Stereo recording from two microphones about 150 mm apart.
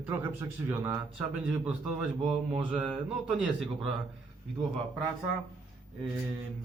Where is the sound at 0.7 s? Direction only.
15° right (ahead or behind); by 3.5 s centre (ahead or behind).